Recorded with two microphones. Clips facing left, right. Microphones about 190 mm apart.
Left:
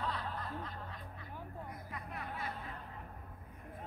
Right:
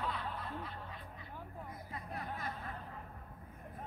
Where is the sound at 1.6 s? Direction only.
35° right (ahead or behind).